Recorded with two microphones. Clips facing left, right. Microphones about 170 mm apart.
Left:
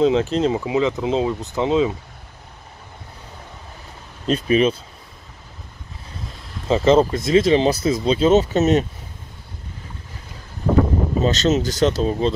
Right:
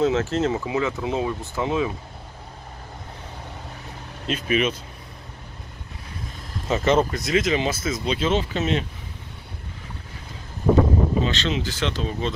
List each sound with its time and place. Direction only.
0.0 s speech: 15° left (ahead or behind)
4.3 s speech: 30° left (ahead or behind)
6.7 s speech: 30° left (ahead or behind)
11.2 s speech: 40° left (ahead or behind)